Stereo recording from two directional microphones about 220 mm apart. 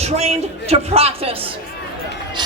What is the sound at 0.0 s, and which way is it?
A man's voice, 30° right (ahead or behind).